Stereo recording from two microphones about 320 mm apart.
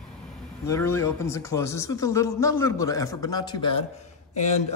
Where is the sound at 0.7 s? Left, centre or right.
Centre.